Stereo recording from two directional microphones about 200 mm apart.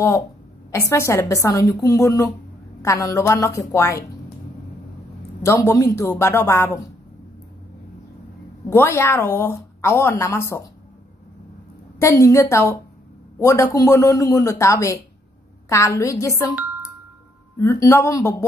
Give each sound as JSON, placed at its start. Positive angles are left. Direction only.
{"t": 0.7, "sound": "a woman's voice", "side_deg": 15}
{"t": 5.4, "sound": "a woman's voice", "side_deg": 15}
{"t": 8.6, "sound": "a woman's voice", "side_deg": 10}
{"t": 12.0, "sound": "a woman's voice", "side_deg": 15}
{"t": 17.6, "sound": "a woman's voice", "side_deg": 15}